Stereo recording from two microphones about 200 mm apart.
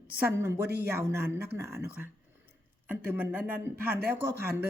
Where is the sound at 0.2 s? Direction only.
10° right (ahead or behind).